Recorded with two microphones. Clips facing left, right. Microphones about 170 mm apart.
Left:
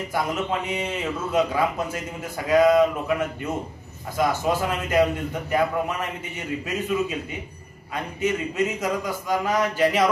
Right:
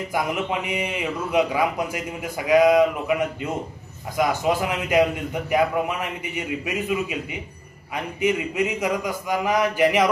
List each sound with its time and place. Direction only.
0.1 s a man's voice: 15° right (ahead or behind)